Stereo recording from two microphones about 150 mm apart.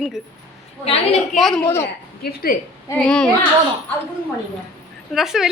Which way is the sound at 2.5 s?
65° left (ahead or behind).